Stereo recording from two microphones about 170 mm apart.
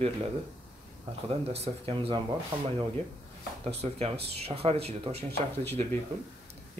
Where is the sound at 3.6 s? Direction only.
40° right (ahead or behind).